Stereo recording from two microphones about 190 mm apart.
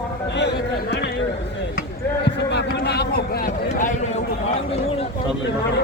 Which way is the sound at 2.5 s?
60° left (ahead or behind).